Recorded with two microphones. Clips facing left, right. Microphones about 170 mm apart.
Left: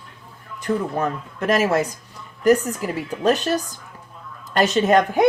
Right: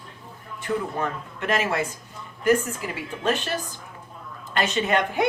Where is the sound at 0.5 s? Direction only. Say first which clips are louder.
Left 4 dB; 40° left (ahead or behind).